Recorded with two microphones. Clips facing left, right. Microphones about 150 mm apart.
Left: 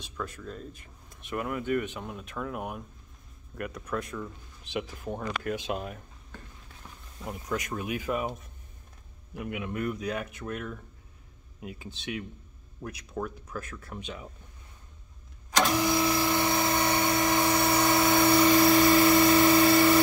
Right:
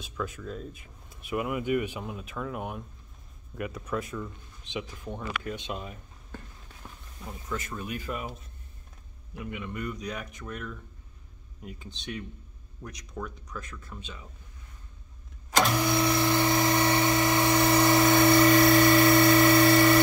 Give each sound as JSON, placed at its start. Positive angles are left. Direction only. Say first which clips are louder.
{"t": 0.0, "sound": "speech", "louder": "right 2 dB", "side_deg": 0}
{"t": 5.7, "sound": "speech", "louder": "left 4 dB", "side_deg": 50}
{"t": 7.6, "sound": "speech", "louder": "left 3 dB", "side_deg": 60}
{"t": 9.5, "sound": "speech", "louder": "left 3 dB", "side_deg": 5}
{"t": 13.2, "sound": "speech", "louder": "left 3 dB", "side_deg": 5}
{"t": 15.5, "sound": "a sound", "louder": "even", "side_deg": 5}